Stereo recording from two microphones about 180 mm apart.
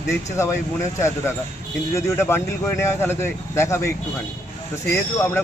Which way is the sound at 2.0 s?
15° left (ahead or behind).